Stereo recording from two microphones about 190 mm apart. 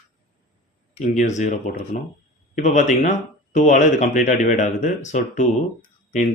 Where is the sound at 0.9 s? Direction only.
40° left (ahead or behind).